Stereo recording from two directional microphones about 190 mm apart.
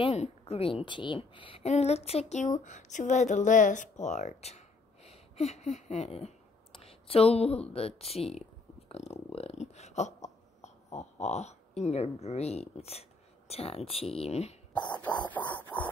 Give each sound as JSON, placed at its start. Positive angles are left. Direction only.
{"t": 0.0, "sound": "speech", "side_deg": 35}
{"t": 14.9, "sound": "music", "side_deg": 10}